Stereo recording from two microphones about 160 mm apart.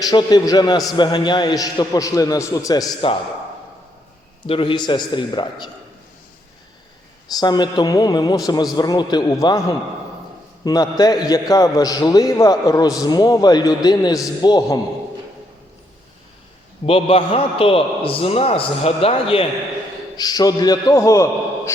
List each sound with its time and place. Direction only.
0.0 s a man's voice: 25° left (ahead or behind)
4.4 s a man's voice: 35° left (ahead or behind)
7.3 s a man's voice: 25° left (ahead or behind)
16.8 s a man's voice: 35° left (ahead or behind)
20.1 s a man's voice: 25° left (ahead or behind)